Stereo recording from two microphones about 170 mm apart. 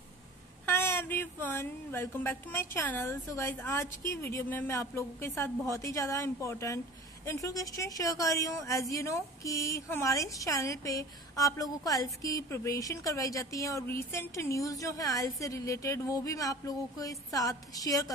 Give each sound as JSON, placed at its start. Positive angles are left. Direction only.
{"t": 0.7, "sound": "a woman's voice", "side_deg": 10}